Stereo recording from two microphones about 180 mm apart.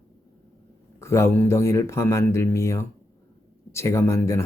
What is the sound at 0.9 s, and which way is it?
Speech, 15° left (ahead or behind).